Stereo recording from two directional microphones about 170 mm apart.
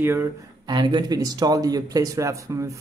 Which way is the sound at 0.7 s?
25° right (ahead or behind).